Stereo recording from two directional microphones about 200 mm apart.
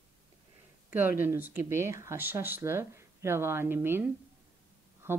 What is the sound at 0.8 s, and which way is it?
Speech, 10° right (ahead or behind).